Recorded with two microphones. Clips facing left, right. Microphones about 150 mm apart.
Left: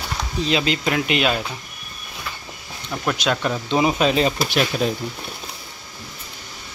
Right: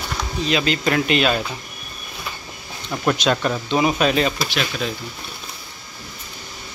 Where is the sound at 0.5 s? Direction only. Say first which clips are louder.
Even; 25° left (ahead or behind).